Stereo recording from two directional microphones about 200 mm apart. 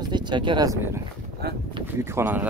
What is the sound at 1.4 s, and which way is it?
Speech, 55° right (ahead or behind).